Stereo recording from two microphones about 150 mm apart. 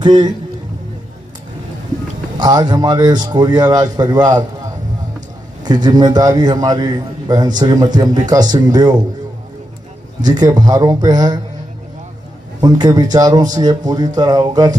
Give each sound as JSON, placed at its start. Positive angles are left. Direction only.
{"t": 0.0, "sound": "a man's voice", "side_deg": -30}
{"t": 2.3, "sound": "a man's voice", "side_deg": -30}
{"t": 5.6, "sound": "a man's voice", "side_deg": -25}
{"t": 10.2, "sound": "a man's voice", "side_deg": -25}
{"t": 12.5, "sound": "a man's voice", "side_deg": -30}